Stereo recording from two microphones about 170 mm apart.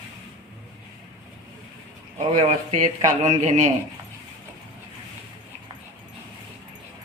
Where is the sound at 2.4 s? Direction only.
45° right (ahead or behind).